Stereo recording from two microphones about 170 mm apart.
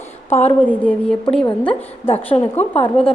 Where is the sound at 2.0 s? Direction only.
35° left (ahead or behind).